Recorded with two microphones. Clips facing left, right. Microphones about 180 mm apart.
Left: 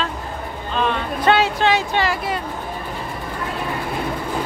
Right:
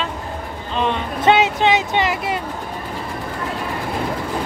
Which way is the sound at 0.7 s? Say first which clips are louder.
Even; 20° right (ahead or behind).